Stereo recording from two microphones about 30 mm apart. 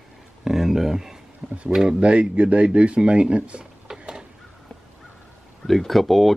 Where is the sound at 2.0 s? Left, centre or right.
Right.